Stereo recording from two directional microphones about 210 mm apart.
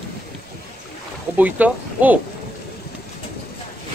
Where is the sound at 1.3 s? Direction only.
10° right (ahead or behind).